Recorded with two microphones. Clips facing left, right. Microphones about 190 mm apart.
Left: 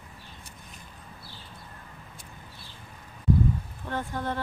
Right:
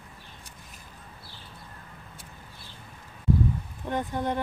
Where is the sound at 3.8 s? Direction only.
15° right (ahead or behind).